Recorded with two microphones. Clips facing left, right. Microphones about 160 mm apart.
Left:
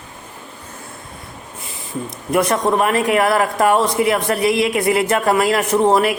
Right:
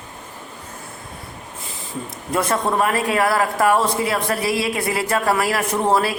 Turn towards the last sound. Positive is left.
turn(degrees=20)  # may be behind; listen again after turning